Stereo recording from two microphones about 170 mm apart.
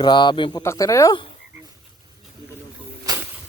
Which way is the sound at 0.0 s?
25° left (ahead or behind).